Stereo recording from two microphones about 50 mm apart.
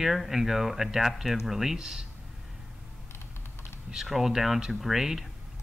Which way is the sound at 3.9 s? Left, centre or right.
Centre.